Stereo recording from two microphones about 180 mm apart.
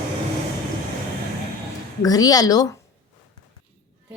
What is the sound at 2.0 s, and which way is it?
Speech, 20° left (ahead or behind).